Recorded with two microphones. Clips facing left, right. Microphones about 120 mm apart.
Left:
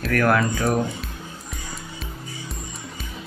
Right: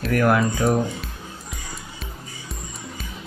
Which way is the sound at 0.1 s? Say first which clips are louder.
Right 1 dB; 20° right (ahead or behind).